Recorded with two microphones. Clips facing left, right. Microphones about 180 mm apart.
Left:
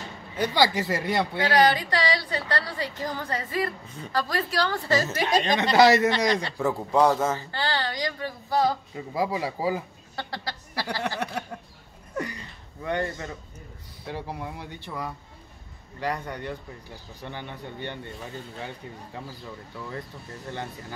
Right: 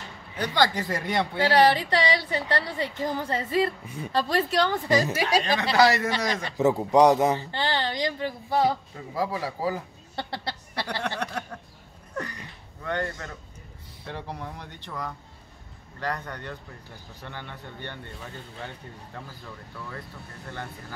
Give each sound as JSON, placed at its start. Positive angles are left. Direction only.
{"t": 0.4, "sound": "speech", "side_deg": 10}
{"t": 1.5, "sound": "a woman's voice", "side_deg": -25}
{"t": 3.8, "sound": "a woman's voice", "side_deg": -10}
{"t": 4.1, "sound": "a woman's voice", "side_deg": -25}
{"t": 5.4, "sound": "a woman's voice", "side_deg": 25}
{"t": 6.6, "sound": "a woman's voice", "side_deg": -15}
{"t": 8.9, "sound": "speech", "side_deg": 15}
{"t": 10.1, "sound": "a woman's voice", "side_deg": -25}
{"t": 10.7, "sound": "a sound", "side_deg": 5}
{"t": 12.8, "sound": "speech", "side_deg": 10}
{"t": 19.1, "sound": "speech", "side_deg": 15}